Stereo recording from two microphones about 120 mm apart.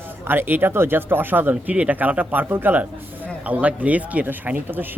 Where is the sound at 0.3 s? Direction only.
15° right (ahead or behind).